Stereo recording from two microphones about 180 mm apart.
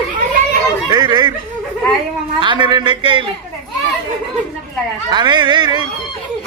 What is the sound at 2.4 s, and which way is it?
Speech, 25° right (ahead or behind).